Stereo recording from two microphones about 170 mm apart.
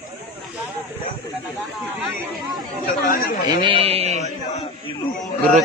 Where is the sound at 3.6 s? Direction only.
35° right (ahead or behind).